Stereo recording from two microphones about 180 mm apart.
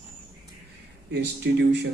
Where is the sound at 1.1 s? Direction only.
70° right (ahead or behind).